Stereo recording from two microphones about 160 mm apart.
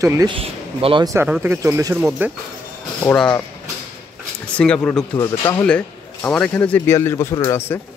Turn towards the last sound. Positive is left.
turn(degrees=15)  # may be behind; listen again after turning